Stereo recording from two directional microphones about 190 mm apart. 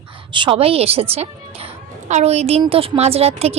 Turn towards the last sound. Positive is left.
turn(degrees=-35)  # may be behind; listen again after turning